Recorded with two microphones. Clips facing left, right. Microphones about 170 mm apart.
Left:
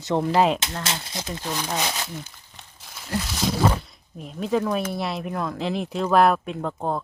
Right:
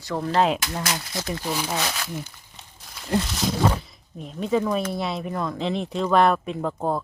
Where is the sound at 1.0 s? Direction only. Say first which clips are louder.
Right 2 dB; 20° left (ahead or behind).